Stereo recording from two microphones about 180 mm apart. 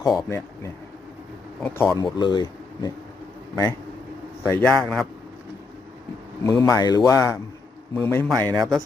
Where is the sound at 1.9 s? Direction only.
25° left (ahead or behind).